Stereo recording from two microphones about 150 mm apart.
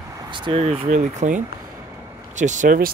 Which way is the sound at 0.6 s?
50° right (ahead or behind).